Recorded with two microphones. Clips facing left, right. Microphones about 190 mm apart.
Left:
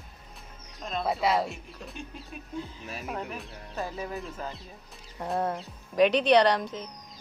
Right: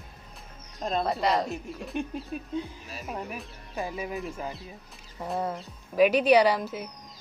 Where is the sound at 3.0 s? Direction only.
Centre (ahead or behind).